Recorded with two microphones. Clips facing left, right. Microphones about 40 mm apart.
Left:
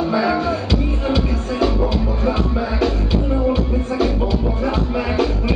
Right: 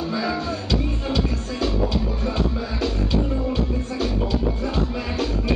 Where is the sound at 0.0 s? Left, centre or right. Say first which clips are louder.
Left 7 dB; centre.